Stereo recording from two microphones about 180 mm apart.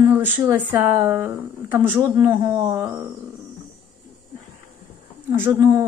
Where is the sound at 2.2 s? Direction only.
20° right (ahead or behind).